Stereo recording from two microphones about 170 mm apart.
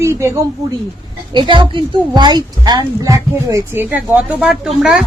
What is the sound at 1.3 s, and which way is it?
A woman's voice, 25° right (ahead or behind).